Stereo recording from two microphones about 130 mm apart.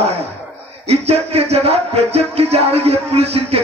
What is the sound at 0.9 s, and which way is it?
Music, 50° right (ahead or behind).